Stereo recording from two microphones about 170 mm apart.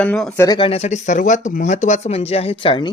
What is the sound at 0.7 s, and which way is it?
A man's voice, 40° left (ahead or behind).